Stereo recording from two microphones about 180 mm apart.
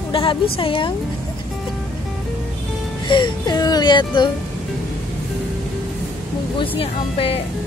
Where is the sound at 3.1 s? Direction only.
25° left (ahead or behind).